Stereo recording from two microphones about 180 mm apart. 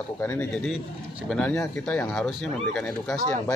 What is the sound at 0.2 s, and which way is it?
A man's voice, 10° left (ahead or behind).